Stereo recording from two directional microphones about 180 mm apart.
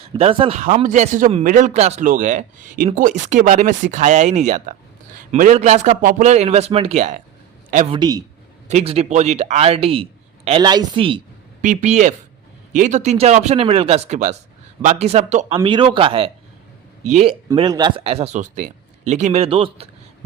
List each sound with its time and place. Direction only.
0.1 s speech: 30° right (ahead or behind)
0.6 s a man's voice: 45° right (ahead or behind)
7.9 s a man's voice: 20° right (ahead or behind)
8.6 s speech: 35° right (ahead or behind)
11.6 s speech: 40° right (ahead or behind)
17.5 s speech: 25° right (ahead or behind)